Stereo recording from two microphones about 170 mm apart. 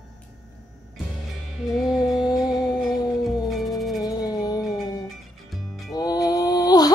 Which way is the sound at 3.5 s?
Centre (ahead or behind).